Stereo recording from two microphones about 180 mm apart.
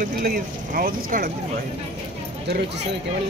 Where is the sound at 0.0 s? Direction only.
50° right (ahead or behind).